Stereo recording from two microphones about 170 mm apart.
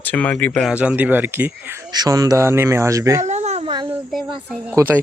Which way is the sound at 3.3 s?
40° right (ahead or behind).